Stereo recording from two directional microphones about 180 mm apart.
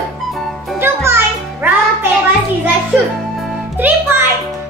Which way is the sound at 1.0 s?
15° right (ahead or behind).